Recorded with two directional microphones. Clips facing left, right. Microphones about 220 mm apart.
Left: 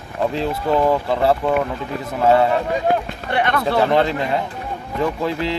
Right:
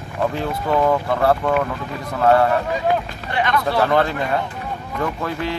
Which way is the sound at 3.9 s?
25° left (ahead or behind).